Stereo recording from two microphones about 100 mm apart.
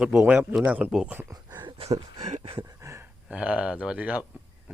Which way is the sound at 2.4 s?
55° right (ahead or behind).